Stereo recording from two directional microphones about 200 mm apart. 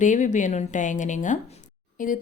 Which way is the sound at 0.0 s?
40° left (ahead or behind).